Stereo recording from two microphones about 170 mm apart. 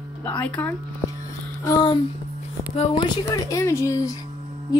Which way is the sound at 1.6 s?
20° left (ahead or behind).